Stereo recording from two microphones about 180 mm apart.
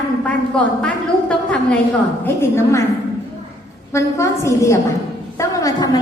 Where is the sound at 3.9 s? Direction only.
15° left (ahead or behind).